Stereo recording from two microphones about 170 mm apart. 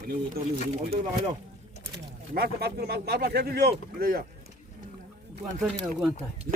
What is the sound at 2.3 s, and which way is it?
Speech, 65° right (ahead or behind).